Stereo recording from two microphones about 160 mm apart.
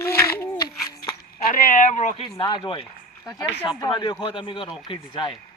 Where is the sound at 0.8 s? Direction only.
20° left (ahead or behind).